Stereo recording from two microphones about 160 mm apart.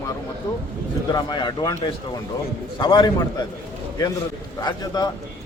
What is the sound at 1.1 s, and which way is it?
Speech, 25° left (ahead or behind).